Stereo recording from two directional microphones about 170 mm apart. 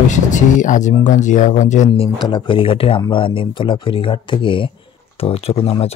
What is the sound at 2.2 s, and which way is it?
Speech, 30° left (ahead or behind).